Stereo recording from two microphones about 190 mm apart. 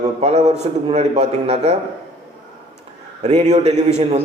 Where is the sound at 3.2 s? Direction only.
35° right (ahead or behind).